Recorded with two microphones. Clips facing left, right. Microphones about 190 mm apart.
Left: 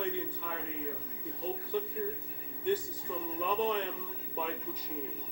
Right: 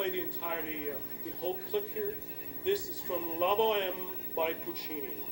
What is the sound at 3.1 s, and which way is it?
Speech, 20° right (ahead or behind).